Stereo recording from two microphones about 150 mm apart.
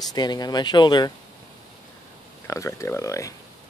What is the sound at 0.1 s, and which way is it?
Speech, 25° left (ahead or behind).